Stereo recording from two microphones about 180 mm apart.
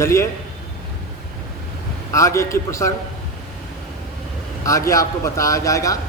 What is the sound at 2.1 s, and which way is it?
Speech, 15° left (ahead or behind).